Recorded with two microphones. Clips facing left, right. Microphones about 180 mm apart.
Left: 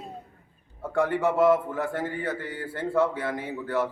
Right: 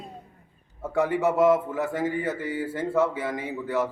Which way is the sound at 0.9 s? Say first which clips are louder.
Right 1 dB; 10° right (ahead or behind).